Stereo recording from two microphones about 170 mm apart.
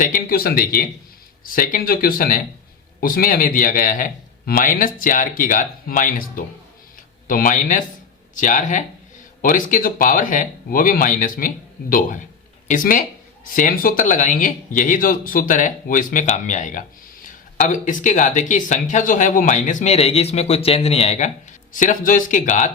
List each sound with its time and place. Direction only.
0.0 s a man's voice: 55° left (ahead or behind)